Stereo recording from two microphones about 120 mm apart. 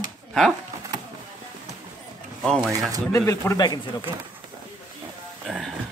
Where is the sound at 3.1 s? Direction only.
25° left (ahead or behind).